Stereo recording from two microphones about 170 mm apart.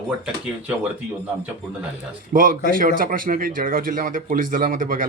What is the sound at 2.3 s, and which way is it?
Speech, 55° right (ahead or behind).